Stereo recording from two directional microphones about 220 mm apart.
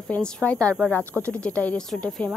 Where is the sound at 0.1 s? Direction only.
5° left (ahead or behind).